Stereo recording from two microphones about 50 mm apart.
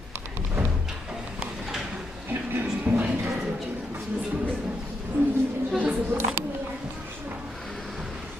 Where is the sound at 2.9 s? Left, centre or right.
Centre.